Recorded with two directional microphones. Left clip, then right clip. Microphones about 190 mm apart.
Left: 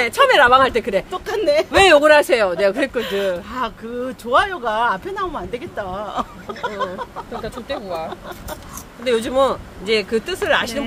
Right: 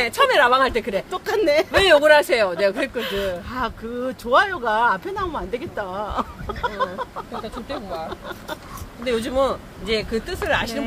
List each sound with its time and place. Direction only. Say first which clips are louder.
0.0 s speech: left 4 dB; 30° left (ahead or behind)
1.1 s speech: right 1 dB; 25° right (ahead or behind)
1.7 s speech: left 4 dB; 35° left (ahead or behind)
3.0 s speech: left 4 dB; 20° right (ahead or behind)
9.0 s speech: left 4 dB; 35° left (ahead or behind)